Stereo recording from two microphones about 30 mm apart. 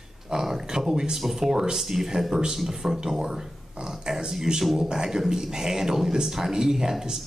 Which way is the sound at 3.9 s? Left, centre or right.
Centre.